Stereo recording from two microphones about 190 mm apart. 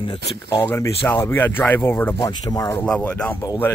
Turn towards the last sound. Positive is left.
turn(degrees=10)  # may be behind; listen again after turning